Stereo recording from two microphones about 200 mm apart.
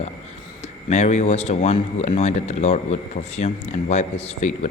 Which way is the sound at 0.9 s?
35° left (ahead or behind).